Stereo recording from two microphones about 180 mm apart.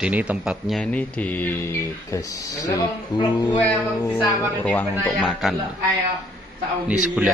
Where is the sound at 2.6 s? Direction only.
25° left (ahead or behind).